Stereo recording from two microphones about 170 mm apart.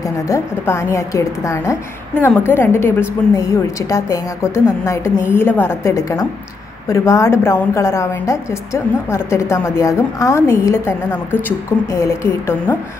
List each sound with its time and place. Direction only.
0.0 s a woman's voice: 20° left (ahead or behind)